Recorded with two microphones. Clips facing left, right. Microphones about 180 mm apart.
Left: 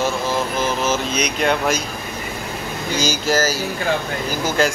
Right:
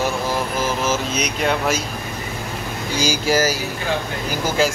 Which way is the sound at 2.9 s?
10° right (ahead or behind).